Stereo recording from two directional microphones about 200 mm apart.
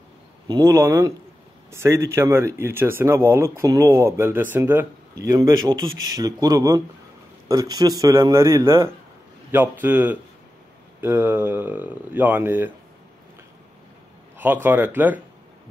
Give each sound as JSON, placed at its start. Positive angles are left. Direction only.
{"t": 0.5, "sound": "speech", "side_deg": -15}
{"t": 14.4, "sound": "speech", "side_deg": -10}